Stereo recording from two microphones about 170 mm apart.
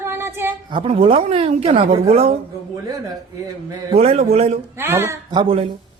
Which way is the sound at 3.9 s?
35° right (ahead or behind).